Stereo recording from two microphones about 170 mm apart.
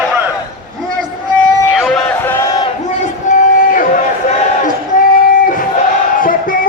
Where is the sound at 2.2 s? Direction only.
15° left (ahead or behind).